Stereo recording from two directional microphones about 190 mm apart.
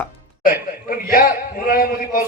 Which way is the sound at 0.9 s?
50° left (ahead or behind).